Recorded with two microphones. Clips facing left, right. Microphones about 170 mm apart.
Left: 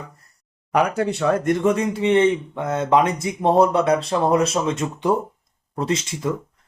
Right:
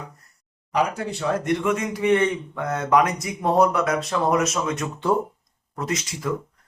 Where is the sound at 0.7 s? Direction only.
60° left (ahead or behind).